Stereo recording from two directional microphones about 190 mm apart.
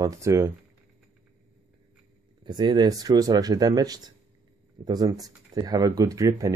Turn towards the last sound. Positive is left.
turn(degrees=-15)  # may be behind; listen again after turning